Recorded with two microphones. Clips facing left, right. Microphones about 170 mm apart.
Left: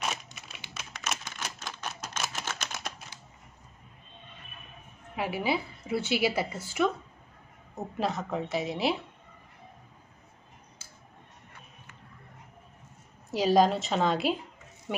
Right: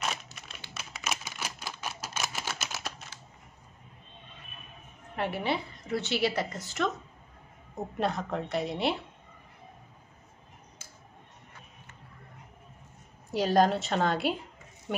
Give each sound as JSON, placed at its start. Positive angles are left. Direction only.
{"t": 0.0, "sound": "typing", "side_deg": 0}
{"t": 0.7, "sound": "a sound", "side_deg": -5}
{"t": 5.1, "sound": "a woman's voice", "side_deg": 5}
{"t": 13.3, "sound": "a woman's voice", "side_deg": 0}